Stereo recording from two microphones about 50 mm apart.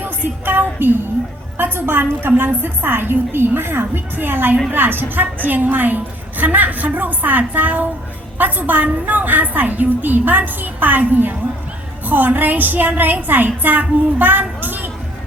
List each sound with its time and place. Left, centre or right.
0.4 s a woman's voice: right